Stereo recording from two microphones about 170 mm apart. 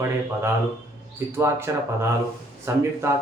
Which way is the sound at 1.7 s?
15° right (ahead or behind).